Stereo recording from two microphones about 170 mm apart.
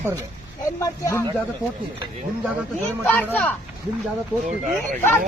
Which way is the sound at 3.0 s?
10° left (ahead or behind).